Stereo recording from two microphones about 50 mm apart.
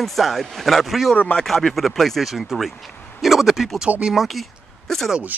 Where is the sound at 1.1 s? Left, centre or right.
Left.